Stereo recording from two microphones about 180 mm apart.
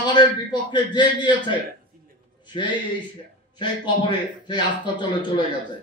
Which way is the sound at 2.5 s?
30° left (ahead or behind).